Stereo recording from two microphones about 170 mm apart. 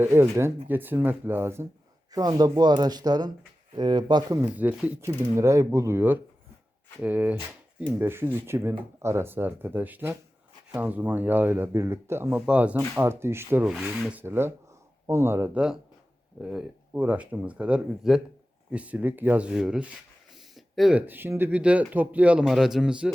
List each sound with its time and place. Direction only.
0.0 s speech: 15° right (ahead or behind)
2.1 s speech: 25° right (ahead or behind)
4.4 s speech: 10° right (ahead or behind)
13.7 s speech: centre (ahead or behind)